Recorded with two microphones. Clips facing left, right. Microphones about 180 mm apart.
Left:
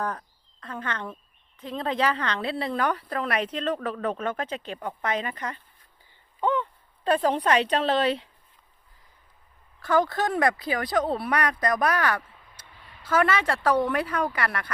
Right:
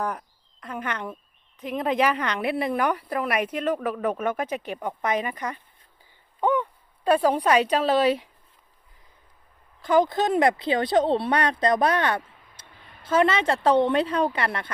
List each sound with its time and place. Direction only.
0.0 s speech: 15° right (ahead or behind)
9.8 s speech: 20° right (ahead or behind)